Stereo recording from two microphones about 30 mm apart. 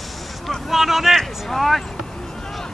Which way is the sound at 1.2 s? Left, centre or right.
Centre.